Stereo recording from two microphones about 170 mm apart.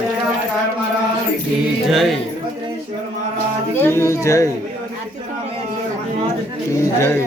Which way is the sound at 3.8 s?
15° left (ahead or behind).